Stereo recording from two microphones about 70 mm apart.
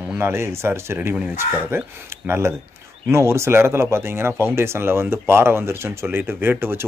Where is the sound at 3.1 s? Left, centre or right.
Right.